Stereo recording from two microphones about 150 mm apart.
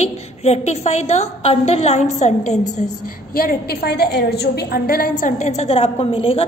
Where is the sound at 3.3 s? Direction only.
80° left.